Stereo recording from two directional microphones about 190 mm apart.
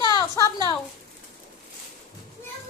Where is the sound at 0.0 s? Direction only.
20° left (ahead or behind).